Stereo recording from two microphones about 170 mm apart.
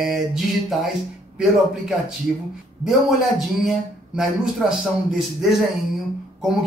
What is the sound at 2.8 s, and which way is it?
A man's voice, centre (ahead or behind).